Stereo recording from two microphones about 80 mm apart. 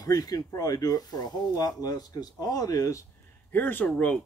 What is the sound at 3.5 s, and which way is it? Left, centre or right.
Speech, left.